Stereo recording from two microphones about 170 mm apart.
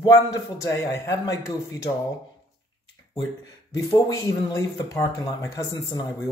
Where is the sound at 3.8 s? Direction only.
20° left (ahead or behind).